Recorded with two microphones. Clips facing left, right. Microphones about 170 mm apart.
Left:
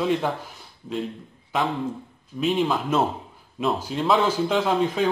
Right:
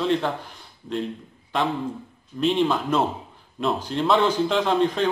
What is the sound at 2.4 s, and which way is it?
A man's voice, 5° left (ahead or behind).